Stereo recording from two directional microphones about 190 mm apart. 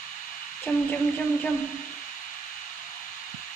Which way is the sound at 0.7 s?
10° left (ahead or behind).